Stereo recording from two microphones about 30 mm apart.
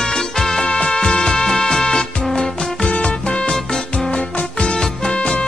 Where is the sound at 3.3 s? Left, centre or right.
Left.